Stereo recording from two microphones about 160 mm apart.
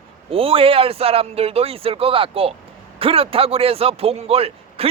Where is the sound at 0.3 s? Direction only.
35° right (ahead or behind).